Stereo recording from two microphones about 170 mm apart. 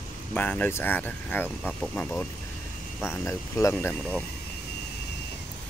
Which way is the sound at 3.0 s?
15° left (ahead or behind).